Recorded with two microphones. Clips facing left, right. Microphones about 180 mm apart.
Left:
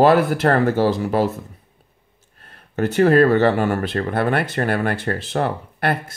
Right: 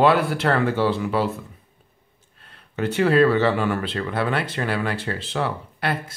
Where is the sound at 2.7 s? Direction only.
45° left (ahead or behind).